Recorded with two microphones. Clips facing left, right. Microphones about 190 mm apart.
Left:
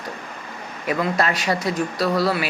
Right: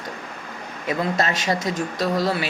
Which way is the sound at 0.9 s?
25° right (ahead or behind).